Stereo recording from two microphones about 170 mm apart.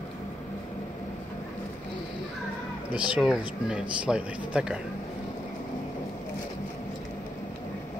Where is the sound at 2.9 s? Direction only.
5° right (ahead or behind).